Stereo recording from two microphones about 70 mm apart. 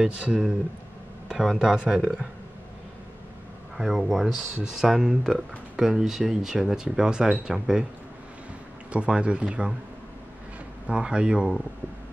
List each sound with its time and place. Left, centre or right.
0.0 s speech: centre
3.7 s speech: centre
8.9 s speech: centre
10.9 s speech: centre